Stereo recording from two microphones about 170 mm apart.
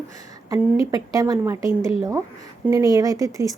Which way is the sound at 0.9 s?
20° right (ahead or behind).